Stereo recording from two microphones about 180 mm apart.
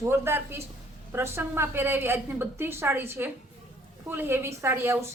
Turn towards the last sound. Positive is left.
turn(degrees=-15)  # may be behind; listen again after turning